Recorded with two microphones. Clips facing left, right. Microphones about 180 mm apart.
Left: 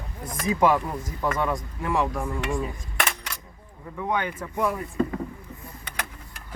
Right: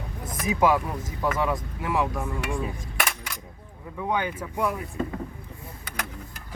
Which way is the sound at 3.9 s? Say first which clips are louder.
Even; 10° right (ahead or behind).